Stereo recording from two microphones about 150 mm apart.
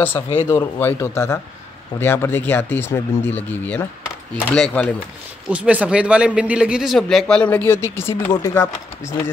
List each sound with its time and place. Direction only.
0.5 s speech: 20° left (ahead or behind)
5.5 s a man's voice: 10° right (ahead or behind); by 9.3 s 20° left (ahead or behind)